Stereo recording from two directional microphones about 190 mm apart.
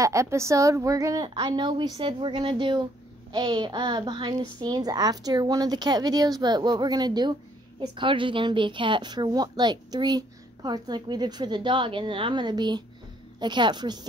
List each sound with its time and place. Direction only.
0.0 s a woman's voice: 15° right (ahead or behind)